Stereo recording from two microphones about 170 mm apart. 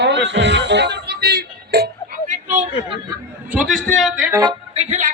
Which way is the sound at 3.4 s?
5° right (ahead or behind).